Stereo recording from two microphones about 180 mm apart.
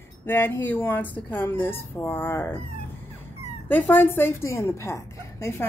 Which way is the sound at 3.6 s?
10° left (ahead or behind).